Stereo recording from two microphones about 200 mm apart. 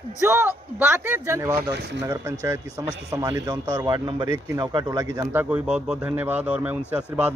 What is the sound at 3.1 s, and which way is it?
A man's voice, 15° right (ahead or behind).